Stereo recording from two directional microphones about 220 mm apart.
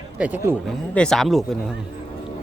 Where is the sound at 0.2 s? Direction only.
5° right (ahead or behind).